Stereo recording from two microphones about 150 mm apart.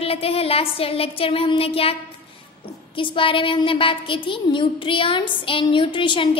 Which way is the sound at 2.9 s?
35° left (ahead or behind).